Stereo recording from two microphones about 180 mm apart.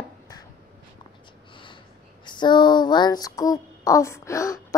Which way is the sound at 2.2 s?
25° left (ahead or behind).